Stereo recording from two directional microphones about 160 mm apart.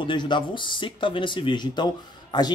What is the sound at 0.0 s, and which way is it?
Speech, 30° left (ahead or behind).